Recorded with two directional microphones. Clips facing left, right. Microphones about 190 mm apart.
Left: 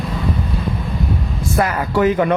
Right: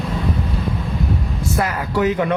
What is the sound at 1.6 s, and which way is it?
Speech, 50° left (ahead or behind).